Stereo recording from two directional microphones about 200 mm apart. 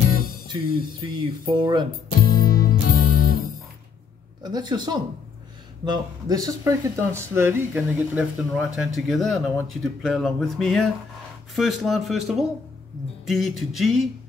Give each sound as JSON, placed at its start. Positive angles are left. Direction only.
{"t": 0.1, "sound": "music", "side_deg": 45}
{"t": 1.0, "sound": "speech", "side_deg": -25}
{"t": 2.4, "sound": "music", "side_deg": 45}
{"t": 4.4, "sound": "speech", "side_deg": -20}